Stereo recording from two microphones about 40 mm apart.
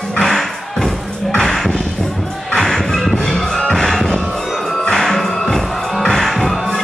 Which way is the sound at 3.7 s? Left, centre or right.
Centre.